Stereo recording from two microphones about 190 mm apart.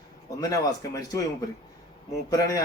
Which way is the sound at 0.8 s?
20° left (ahead or behind).